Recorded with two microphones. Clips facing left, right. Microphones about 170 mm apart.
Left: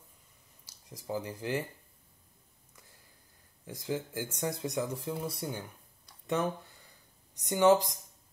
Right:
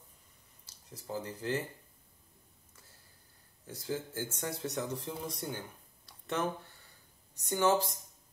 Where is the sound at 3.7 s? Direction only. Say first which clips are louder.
Left 2 dB; 15° left (ahead or behind).